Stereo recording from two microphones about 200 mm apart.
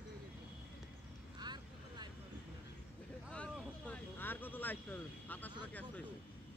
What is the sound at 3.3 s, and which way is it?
Vehicle, 5° left (ahead or behind).